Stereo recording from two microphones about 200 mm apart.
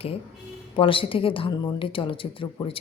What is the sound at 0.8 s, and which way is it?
Speech, 25° left (ahead or behind).